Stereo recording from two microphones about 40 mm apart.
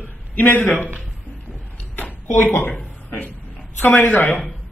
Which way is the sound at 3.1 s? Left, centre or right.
Left.